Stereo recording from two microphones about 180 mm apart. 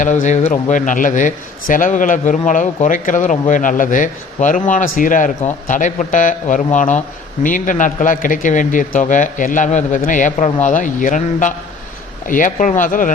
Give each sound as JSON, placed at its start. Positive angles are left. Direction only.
{"t": 0.0, "sound": "a man's voice", "side_deg": 45}